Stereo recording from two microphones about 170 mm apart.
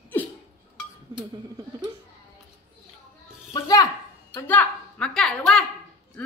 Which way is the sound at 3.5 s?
20° left (ahead or behind).